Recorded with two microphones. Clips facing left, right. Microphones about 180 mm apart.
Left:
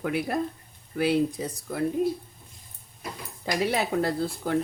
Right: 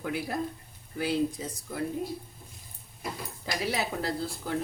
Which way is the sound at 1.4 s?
65° left (ahead or behind).